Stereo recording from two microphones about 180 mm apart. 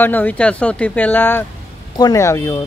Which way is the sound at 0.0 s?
10° left (ahead or behind).